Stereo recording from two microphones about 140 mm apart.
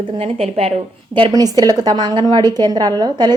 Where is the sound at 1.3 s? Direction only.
25° right (ahead or behind).